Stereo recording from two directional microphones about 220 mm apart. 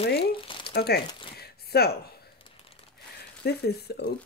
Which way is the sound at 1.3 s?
45° left (ahead or behind).